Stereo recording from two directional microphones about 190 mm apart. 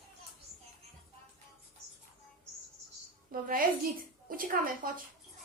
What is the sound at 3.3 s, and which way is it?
A woman's voice, 50° right (ahead or behind).